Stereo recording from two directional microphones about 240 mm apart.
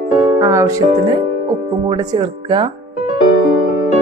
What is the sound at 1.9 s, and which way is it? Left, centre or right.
Speech, centre.